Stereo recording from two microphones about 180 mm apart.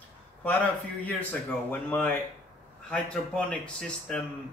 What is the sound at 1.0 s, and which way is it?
A man's voice, 10° left (ahead or behind).